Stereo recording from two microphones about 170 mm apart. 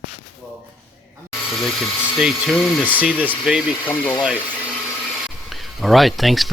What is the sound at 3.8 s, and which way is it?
Speech, 10° left (ahead or behind).